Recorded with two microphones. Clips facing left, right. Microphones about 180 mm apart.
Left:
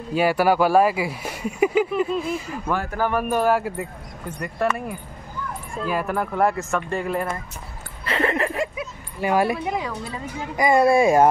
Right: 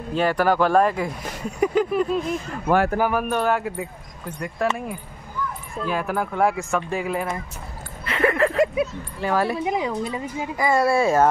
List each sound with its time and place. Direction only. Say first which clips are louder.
0.1 s speech: left 1 dB; 10° left (ahead or behind)
3.0 s speech: right 1 dB; 5° right (ahead or behind)
3.3 s speech: left 2 dB; 5° left (ahead or behind)
5.8 s speech: even; centre (ahead or behind)
8.0 s a sound: right 2 dB; 30° left (ahead or behind)
9.2 s speech: left 2 dB; 15° left (ahead or behind)
9.7 s speech: right 3 dB; 20° right (ahead or behind)
10.6 s speech: left 3 dB; 15° left (ahead or behind)